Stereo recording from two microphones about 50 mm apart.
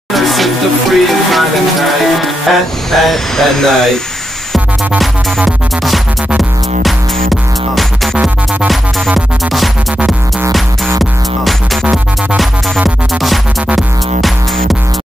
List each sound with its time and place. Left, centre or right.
0.1 s music: centre
2.9 s speech: centre
4.9 s music: centre
7.7 s music: centre
11.0 s music: centre